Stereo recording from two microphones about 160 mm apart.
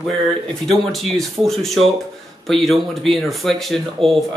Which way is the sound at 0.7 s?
Centre (ahead or behind).